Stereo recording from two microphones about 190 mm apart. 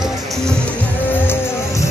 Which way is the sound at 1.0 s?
10° left (ahead or behind).